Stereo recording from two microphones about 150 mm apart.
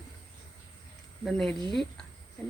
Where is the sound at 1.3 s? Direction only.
5° left (ahead or behind).